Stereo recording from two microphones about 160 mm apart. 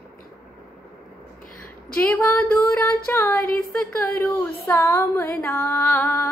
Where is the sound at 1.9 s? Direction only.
10° left (ahead or behind).